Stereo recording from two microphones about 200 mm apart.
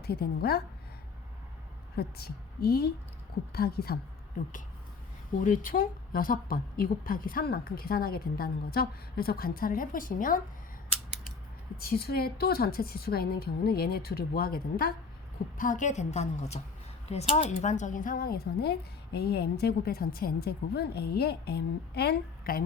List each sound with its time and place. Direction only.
0.0 s speech: 50° left (ahead or behind)
2.0 s speech: 50° left (ahead or behind)
5.4 s speech: 45° left (ahead or behind)
11.8 s a woman's voice: 50° left (ahead or behind)